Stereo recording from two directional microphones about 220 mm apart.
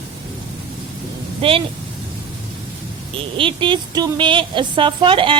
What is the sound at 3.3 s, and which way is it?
A woman's voice, 25° right (ahead or behind).